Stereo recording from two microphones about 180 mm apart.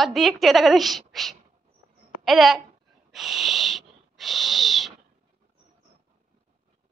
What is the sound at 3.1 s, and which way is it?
Owl, centre (ahead or behind).